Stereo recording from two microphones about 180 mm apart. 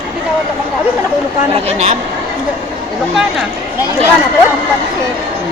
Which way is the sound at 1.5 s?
40° right (ahead or behind).